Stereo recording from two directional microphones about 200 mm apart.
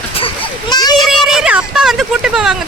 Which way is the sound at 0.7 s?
20° left (ahead or behind).